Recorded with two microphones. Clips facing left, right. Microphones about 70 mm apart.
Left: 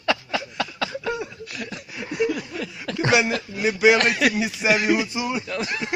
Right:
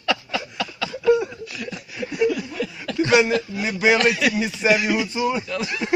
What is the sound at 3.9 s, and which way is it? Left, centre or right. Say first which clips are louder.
Speech: right 1 dB; left.